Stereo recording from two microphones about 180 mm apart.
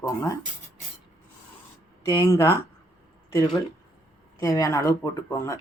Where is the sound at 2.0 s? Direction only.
20° left (ahead or behind).